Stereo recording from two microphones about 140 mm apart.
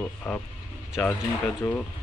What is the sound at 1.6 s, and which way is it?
Speech, 10° left (ahead or behind).